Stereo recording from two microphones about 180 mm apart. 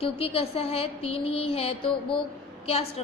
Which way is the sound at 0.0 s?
30° left (ahead or behind).